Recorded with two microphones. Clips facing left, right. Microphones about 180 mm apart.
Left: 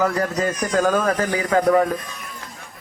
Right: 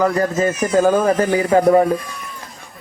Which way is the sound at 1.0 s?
25° right (ahead or behind).